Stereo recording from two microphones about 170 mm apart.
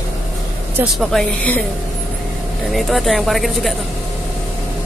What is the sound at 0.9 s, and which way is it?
Speech, centre (ahead or behind).